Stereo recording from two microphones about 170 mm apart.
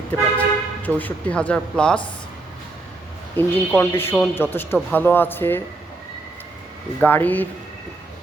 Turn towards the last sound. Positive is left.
turn(degrees=10)  # may be behind; listen again after turning